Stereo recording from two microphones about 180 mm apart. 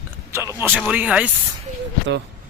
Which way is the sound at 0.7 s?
Centre (ahead or behind).